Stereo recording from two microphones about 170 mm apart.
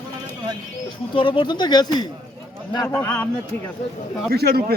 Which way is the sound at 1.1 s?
30° left (ahead or behind).